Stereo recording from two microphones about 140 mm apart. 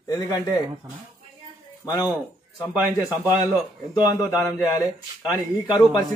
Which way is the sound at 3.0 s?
20° left (ahead or behind).